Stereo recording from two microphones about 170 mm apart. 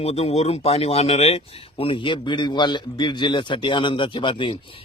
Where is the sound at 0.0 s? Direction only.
35° left (ahead or behind).